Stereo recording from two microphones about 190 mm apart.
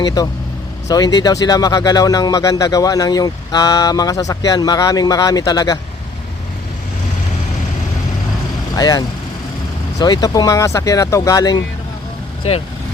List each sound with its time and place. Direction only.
0.0 s speech: 20° left (ahead or behind)
8.7 s speech: 20° left (ahead or behind)
12.4 s speech: 35° left (ahead or behind)